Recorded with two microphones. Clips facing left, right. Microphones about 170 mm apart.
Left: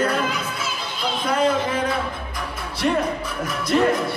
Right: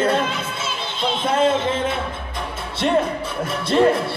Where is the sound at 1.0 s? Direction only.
25° right (ahead or behind).